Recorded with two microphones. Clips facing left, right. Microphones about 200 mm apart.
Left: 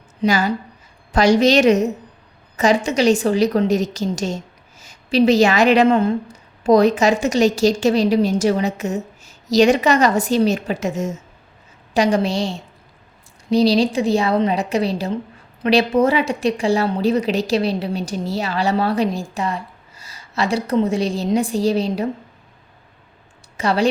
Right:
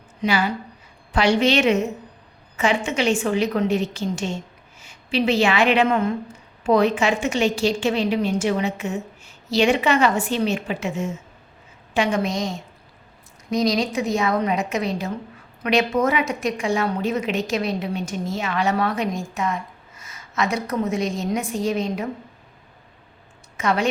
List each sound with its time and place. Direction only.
0.2 s a woman's voice: 40° left (ahead or behind)
23.6 s a woman's voice: 35° left (ahead or behind)